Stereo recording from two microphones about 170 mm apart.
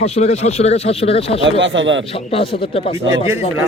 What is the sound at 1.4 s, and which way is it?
Speech, 90° right.